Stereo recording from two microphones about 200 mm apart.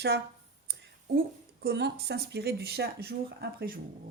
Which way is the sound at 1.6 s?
55° right (ahead or behind).